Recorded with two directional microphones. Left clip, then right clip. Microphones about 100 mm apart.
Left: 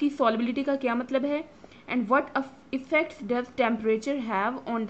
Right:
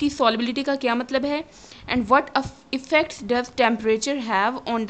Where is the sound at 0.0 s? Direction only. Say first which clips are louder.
Right 4 dB; 20° right (ahead or behind).